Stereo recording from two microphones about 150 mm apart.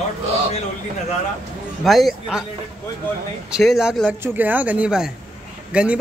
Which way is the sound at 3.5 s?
5° right (ahead or behind).